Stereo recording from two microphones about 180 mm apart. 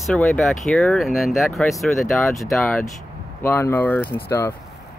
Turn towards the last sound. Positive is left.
turn(degrees=15)  # may be behind; listen again after turning